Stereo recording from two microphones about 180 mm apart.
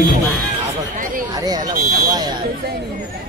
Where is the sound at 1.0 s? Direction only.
50° right (ahead or behind).